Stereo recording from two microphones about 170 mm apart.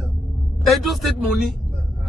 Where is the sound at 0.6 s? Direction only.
Centre (ahead or behind).